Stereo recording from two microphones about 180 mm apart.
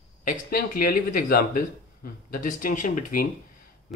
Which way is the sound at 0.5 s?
55° left (ahead or behind).